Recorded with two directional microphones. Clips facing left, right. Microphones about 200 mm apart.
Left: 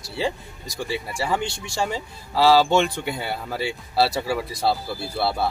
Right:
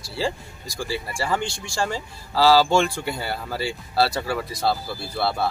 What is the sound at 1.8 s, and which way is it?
Speech, centre (ahead or behind).